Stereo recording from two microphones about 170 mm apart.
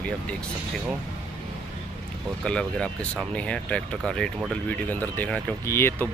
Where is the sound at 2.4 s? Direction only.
5° left (ahead or behind).